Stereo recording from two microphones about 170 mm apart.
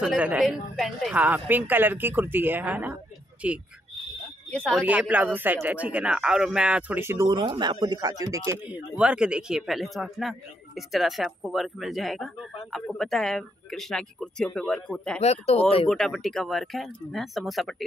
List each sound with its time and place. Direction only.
0.0 s a man's voice: 5° right (ahead or behind)
4.5 s a man's voice: 5° left (ahead or behind)
4.8 s a man's voice: 10° right (ahead or behind)
8.6 s a man's voice: 10° right (ahead or behind)
15.1 s speech: 40° left (ahead or behind)
15.9 s a man's voice: centre (ahead or behind)